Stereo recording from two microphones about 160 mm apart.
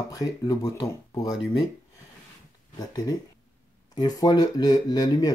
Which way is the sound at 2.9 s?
25° left (ahead or behind).